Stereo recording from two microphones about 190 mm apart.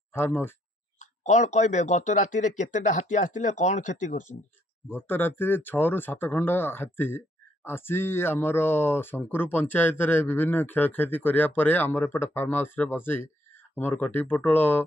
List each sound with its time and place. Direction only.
0.1 s speech: 10° left (ahead or behind)
0.9 s speech: 40° left (ahead or behind)
4.9 s speech: 10° left (ahead or behind)